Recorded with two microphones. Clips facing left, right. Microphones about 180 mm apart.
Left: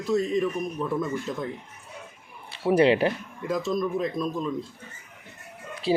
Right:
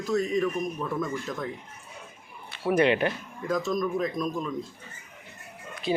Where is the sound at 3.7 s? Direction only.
25° left (ahead or behind).